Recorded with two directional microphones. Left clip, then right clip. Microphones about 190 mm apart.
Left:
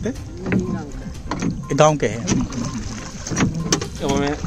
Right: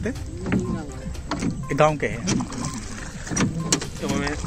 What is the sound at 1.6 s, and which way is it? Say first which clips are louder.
Speech: left 4 dB; 20° left (ahead or behind).